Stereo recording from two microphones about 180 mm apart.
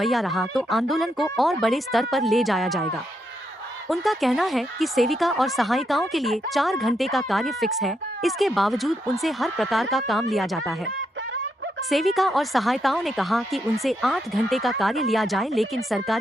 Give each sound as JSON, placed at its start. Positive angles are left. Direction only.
{"t": 0.0, "sound": "speech", "side_deg": 0}
{"t": 11.9, "sound": "speech", "side_deg": 0}